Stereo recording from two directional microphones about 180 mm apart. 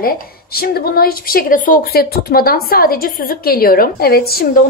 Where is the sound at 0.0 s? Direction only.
55° left (ahead or behind).